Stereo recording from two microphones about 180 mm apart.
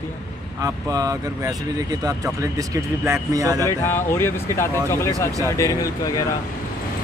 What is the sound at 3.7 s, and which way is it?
Speech, 10° left (ahead or behind).